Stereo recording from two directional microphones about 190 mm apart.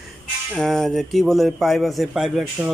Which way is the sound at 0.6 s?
Centre (ahead or behind).